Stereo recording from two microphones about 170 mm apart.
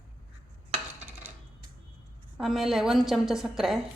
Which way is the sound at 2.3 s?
Centre (ahead or behind).